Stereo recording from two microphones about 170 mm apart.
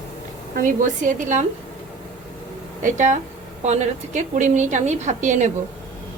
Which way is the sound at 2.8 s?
45° right (ahead or behind).